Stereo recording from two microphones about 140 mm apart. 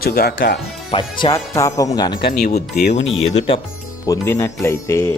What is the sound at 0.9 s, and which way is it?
Speech, 40° left (ahead or behind).